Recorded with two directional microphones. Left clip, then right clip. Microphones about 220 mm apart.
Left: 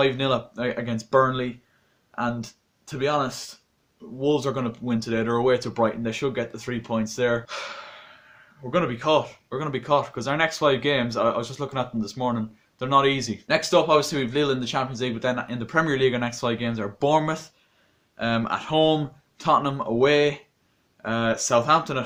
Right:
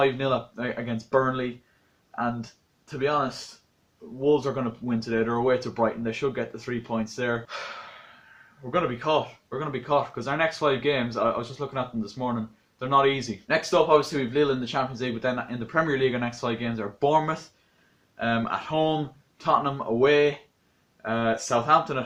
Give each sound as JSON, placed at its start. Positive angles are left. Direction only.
{"t": 0.0, "sound": "speech", "side_deg": 45}